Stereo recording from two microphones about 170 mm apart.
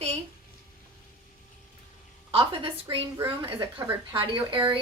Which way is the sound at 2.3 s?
35° right (ahead or behind).